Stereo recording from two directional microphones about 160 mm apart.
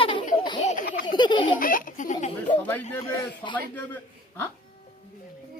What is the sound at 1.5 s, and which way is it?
Speech, 60° left (ahead or behind).